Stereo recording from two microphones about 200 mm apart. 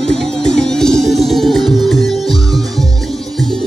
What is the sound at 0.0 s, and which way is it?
Music, 5° left (ahead or behind).